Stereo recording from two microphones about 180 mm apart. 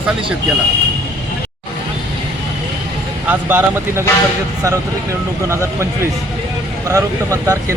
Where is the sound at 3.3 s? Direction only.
10° right (ahead or behind).